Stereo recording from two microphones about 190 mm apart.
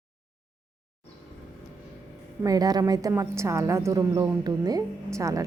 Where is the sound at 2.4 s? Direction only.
20° right (ahead or behind).